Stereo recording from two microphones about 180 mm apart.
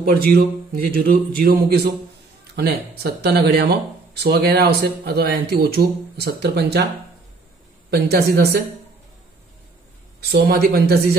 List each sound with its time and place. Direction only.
0.0 s speech: 55° right (ahead or behind)
3.0 s speech: 65° right (ahead or behind)
7.9 s speech: 65° right (ahead or behind)
10.3 s speech: 60° right (ahead or behind)